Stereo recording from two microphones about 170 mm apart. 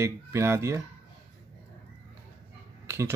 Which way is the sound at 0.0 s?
15° right (ahead or behind).